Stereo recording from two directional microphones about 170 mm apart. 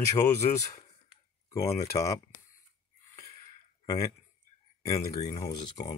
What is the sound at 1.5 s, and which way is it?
Speech, 15° left (ahead or behind).